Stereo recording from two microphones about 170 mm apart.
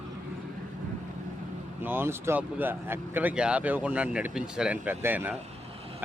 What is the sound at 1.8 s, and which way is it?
Speech, 10° right (ahead or behind).